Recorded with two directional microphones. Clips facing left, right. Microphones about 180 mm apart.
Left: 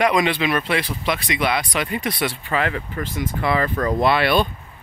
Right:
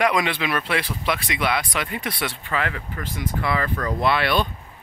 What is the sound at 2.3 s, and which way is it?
Speech, 25° left (ahead or behind).